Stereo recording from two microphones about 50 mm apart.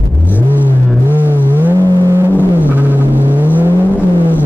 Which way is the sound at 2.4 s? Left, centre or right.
Right.